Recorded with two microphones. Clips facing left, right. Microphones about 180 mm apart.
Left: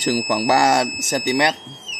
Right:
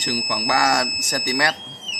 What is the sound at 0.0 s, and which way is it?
Speech, 35° left (ahead or behind).